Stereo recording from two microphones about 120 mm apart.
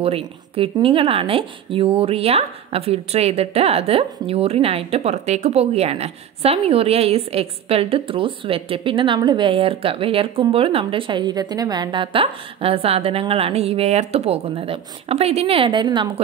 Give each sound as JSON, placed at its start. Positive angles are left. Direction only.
{"t": 0.0, "sound": "speech", "side_deg": -55}